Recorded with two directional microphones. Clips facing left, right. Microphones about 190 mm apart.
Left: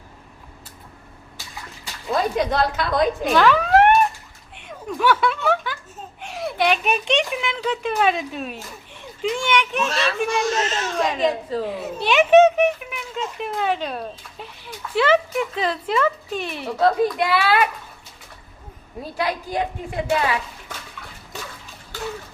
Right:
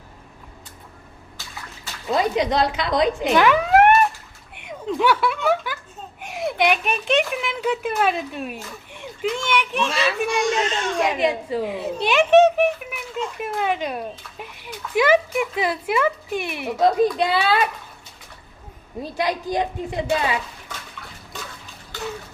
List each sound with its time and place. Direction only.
2.1 s speech: 15° right (ahead or behind)
5.0 s a sound: 10° right (ahead or behind)
6.8 s speech: centre (ahead or behind)
10.9 s speech: 10° right (ahead or behind)
12.1 s speech: centre (ahead or behind)
13.4 s speech: 10° right (ahead or behind)
19.1 s a child's voice: 20° right (ahead or behind)